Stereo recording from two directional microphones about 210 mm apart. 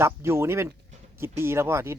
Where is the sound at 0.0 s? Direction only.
10° right (ahead or behind).